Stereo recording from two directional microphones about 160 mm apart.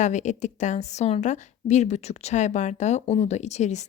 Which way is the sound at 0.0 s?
50° left (ahead or behind).